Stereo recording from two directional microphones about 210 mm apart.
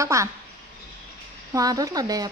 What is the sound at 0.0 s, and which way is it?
Speech, 15° right (ahead or behind).